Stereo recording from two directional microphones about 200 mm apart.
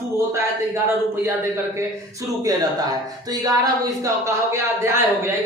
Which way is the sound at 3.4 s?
15° right (ahead or behind).